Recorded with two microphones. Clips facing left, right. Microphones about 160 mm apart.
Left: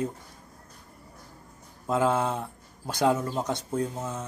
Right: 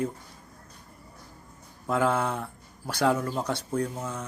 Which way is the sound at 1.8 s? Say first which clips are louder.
Left 1 dB; 20° left (ahead or behind).